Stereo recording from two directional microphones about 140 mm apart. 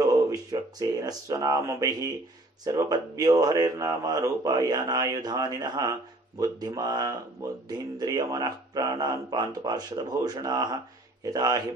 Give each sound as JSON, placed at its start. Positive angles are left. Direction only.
{"t": 0.0, "sound": "speech", "side_deg": -25}